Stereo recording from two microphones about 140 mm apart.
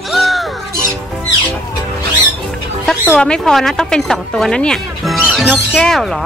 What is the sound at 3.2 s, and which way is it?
Speech, 5° left (ahead or behind).